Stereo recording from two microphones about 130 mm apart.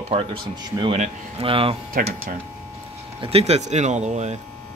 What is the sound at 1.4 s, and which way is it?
Speech, 45° right (ahead or behind).